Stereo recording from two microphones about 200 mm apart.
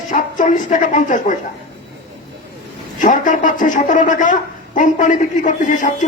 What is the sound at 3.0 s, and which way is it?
A man's voice, 40° left (ahead or behind).